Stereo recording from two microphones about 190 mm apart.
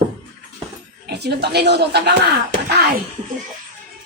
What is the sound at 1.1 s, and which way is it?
Speech, 60° right (ahead or behind).